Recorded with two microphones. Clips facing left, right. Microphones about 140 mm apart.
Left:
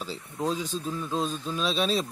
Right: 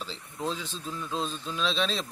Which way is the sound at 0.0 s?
10° left (ahead or behind).